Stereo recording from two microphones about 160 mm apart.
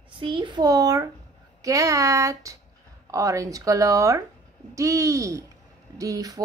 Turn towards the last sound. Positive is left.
turn(degrees=-20)  # may be behind; listen again after turning